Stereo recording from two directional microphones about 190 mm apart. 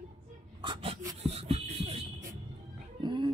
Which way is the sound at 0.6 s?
25° right (ahead or behind).